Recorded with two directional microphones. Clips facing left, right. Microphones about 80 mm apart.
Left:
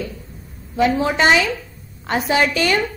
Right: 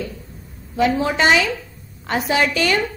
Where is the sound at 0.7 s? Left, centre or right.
Left.